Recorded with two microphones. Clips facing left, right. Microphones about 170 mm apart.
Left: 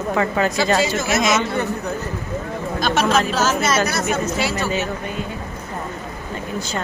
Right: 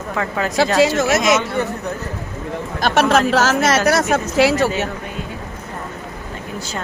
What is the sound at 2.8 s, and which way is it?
Speech, 70° right (ahead or behind).